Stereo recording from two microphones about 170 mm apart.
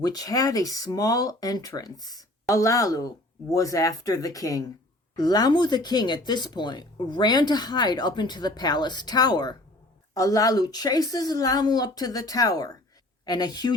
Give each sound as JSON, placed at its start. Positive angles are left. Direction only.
{"t": 0.0, "sound": "speech", "side_deg": 20}